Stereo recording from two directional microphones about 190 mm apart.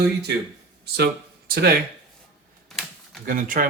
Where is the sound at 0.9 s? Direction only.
55° right (ahead or behind).